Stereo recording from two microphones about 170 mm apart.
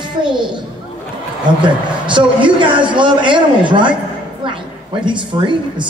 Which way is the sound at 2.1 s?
30° right (ahead or behind).